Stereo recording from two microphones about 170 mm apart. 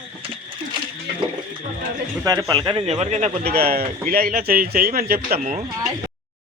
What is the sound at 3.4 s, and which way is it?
A man's voice, 60° right (ahead or behind).